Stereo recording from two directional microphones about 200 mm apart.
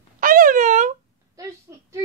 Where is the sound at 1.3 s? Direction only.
15° right (ahead or behind).